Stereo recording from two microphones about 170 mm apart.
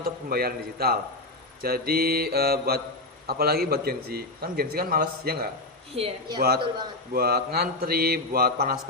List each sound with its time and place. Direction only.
0.0 s a man's voice: 60° right (ahead or behind)
6.0 s speech: 25° right (ahead or behind)
7.1 s a man's voice: 65° right (ahead or behind)